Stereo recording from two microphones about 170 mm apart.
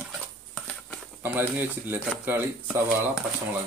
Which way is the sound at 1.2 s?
10° right (ahead or behind).